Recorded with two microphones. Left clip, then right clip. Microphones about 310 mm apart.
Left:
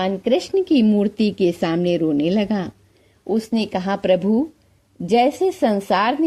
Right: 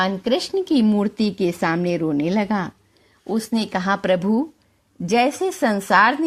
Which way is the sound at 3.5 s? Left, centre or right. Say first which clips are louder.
Right 1 dB; right.